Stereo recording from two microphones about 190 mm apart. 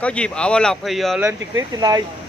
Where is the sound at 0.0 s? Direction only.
5° left (ahead or behind).